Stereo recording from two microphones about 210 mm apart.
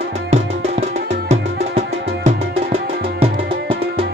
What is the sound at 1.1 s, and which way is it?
Music, 30° right (ahead or behind).